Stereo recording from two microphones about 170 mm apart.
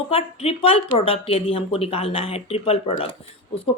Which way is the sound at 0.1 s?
35° left (ahead or behind).